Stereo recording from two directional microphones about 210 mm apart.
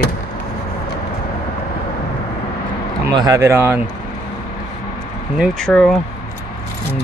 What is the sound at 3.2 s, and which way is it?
Speech, 15° right (ahead or behind).